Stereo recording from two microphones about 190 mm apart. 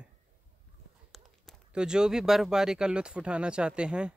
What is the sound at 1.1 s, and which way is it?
A man's voice, centre (ahead or behind).